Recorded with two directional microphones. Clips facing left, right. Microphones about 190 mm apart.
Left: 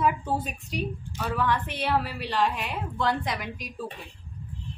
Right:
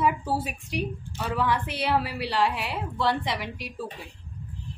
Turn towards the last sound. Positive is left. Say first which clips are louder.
# right 1 dB
turn(degrees=-5)  # may be behind; listen again after turning